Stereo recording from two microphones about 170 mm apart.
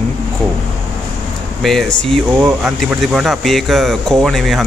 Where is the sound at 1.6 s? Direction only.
Centre (ahead or behind).